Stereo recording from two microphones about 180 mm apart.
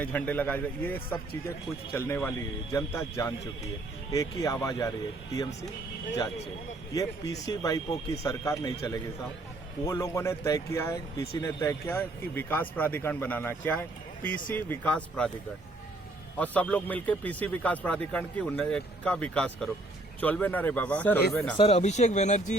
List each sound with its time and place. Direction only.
0.0 s speech: 10° left (ahead or behind)
6.9 s speech: 20° left (ahead or behind)
16.4 s speech: 5° left (ahead or behind)
21.6 s speech: 35° left (ahead or behind)